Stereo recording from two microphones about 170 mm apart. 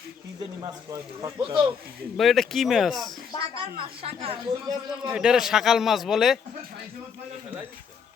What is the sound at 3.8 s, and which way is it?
Speech, 35° right (ahead or behind).